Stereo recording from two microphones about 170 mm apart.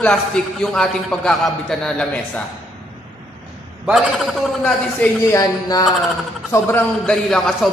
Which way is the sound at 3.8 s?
Centre (ahead or behind).